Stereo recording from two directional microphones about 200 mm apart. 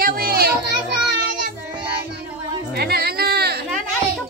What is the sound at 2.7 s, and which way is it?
Music, 50° right (ahead or behind).